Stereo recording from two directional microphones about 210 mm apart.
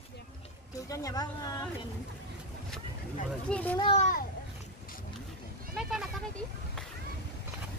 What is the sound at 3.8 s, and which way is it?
Speech, 30° left (ahead or behind).